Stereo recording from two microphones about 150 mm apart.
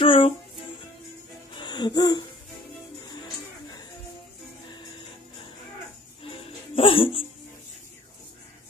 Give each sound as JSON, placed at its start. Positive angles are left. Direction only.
{"t": 0.0, "sound": "music", "side_deg": 35}
{"t": 1.6, "sound": "a sound", "side_deg": 30}
{"t": 6.2, "sound": "music", "side_deg": 40}